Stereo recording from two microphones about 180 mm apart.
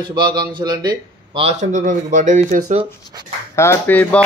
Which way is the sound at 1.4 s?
45° right (ahead or behind).